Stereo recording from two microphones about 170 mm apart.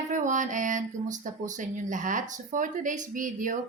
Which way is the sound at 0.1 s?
50° right (ahead or behind).